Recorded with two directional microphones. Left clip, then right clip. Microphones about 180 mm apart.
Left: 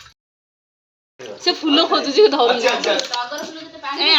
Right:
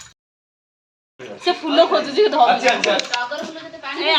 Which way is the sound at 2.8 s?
Centre (ahead or behind).